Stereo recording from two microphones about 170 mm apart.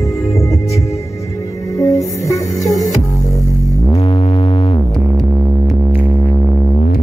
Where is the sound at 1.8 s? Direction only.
20° left (ahead or behind).